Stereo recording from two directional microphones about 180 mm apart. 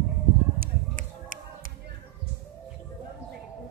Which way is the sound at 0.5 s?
50° right (ahead or behind).